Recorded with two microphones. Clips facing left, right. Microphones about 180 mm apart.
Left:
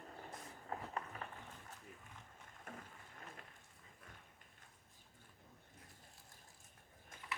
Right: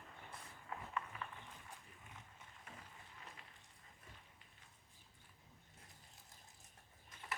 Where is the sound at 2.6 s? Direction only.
50° left (ahead or behind).